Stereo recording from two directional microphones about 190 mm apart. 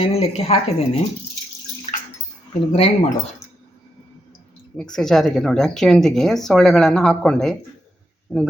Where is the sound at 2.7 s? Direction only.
35° left (ahead or behind).